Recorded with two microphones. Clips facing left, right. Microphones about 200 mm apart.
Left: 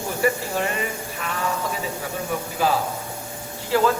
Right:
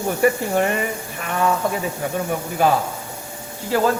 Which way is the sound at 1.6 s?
55° right (ahead or behind).